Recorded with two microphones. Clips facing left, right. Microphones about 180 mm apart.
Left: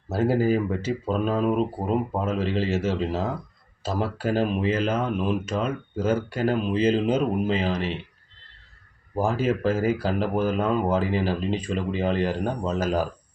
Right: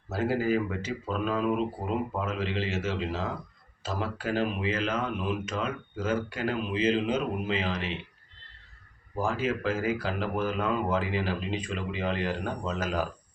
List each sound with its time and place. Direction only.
0.1 s speech: 35° left (ahead or behind)
9.1 s speech: 40° left (ahead or behind)